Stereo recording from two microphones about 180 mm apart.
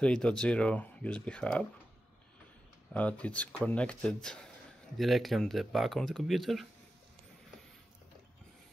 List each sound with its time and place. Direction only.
0.0 s speech: 5° left (ahead or behind)
2.9 s speech: 5° left (ahead or behind)